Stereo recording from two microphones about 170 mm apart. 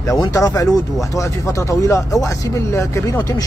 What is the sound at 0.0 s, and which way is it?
Speech, 20° left (ahead or behind).